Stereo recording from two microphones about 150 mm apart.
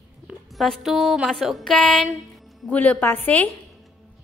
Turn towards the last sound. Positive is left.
turn(degrees=10)  # may be behind; listen again after turning